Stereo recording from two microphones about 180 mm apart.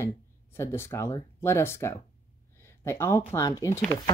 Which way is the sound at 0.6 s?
15° left (ahead or behind).